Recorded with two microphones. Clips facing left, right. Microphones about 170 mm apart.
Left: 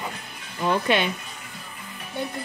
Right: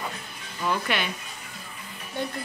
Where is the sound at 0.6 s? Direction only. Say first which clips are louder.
Left 5 dB; 25° left (ahead or behind).